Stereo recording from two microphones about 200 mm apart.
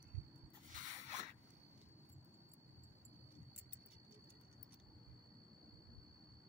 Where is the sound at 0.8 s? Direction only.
35° right (ahead or behind).